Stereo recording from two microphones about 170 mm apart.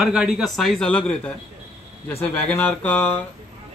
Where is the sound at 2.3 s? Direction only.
10° left (ahead or behind).